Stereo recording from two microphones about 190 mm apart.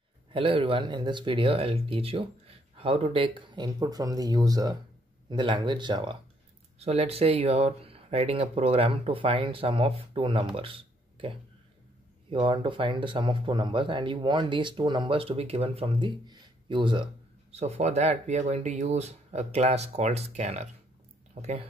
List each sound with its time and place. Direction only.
0.3 s speech: 30° right (ahead or behind)